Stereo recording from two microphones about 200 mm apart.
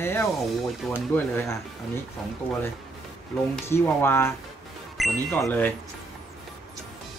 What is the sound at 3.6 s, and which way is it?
Speech, 10° left (ahead or behind).